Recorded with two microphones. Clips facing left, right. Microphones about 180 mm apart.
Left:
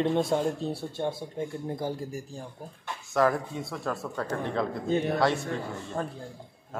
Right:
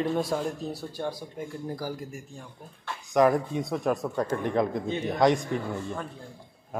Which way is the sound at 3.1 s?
20° right (ahead or behind).